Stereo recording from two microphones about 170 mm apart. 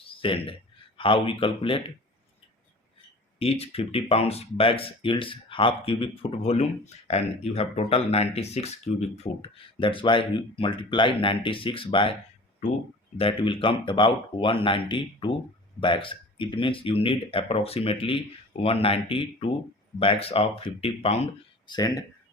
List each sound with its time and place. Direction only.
0.0 s a sound: 30° left (ahead or behind)
0.9 s speech: 30° left (ahead or behind)
3.3 s speech: 35° left (ahead or behind)
13.1 s speech: 30° left (ahead or behind)
21.7 s speech: 25° left (ahead or behind)